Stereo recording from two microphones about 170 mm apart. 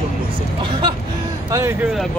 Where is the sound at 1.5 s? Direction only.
15° right (ahead or behind).